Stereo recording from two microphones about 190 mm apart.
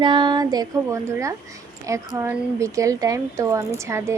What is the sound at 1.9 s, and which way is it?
Speech, 15° right (ahead or behind).